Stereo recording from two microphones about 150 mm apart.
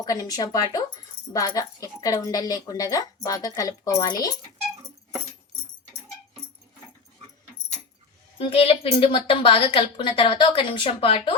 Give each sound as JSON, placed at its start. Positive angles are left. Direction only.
{"t": 0.0, "sound": "a woman's voice", "side_deg": 25}
{"t": 8.4, "sound": "a woman's voice", "side_deg": 40}